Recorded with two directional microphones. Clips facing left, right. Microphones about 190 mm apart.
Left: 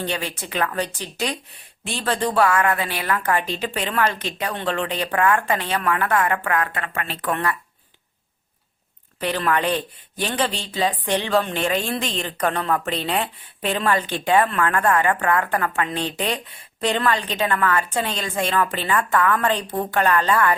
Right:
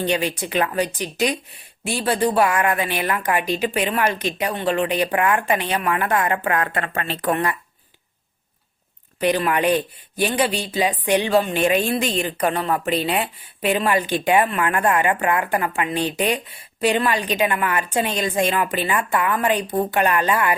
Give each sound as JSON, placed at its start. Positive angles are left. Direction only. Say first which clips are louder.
{"t": 0.0, "sound": "speech", "louder": "right 5 dB", "side_deg": -15}
{"t": 6.7, "sound": "speech", "louder": "right 4 dB", "side_deg": -40}
{"t": 9.2, "sound": "speech", "louder": "right 3 dB", "side_deg": -15}